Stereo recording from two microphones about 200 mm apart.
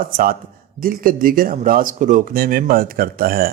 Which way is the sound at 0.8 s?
45° right (ahead or behind).